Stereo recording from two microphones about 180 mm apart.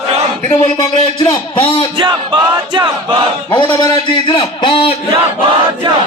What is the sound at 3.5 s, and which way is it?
A man's voice, 25° left (ahead or behind).